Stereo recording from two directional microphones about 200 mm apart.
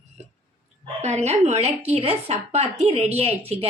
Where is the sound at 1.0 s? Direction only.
35° right (ahead or behind).